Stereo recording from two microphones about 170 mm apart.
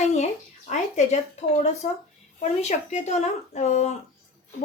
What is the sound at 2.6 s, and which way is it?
A woman's voice, 40° left (ahead or behind).